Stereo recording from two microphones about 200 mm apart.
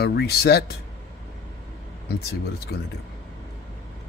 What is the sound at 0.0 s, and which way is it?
Speech, 55° left (ahead or behind).